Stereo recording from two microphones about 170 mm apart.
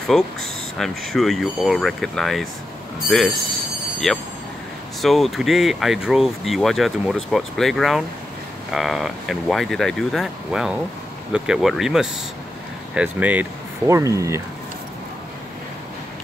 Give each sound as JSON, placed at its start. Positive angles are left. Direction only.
{"t": 0.1, "sound": "speech", "side_deg": 0}
{"t": 4.1, "sound": "speech", "side_deg": 0}